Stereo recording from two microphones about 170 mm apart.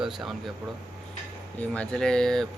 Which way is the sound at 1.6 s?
5° left (ahead or behind).